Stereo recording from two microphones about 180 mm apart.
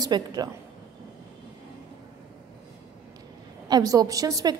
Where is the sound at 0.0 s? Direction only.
20° right (ahead or behind).